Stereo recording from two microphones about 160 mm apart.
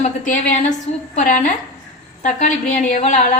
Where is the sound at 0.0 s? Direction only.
45° left (ahead or behind).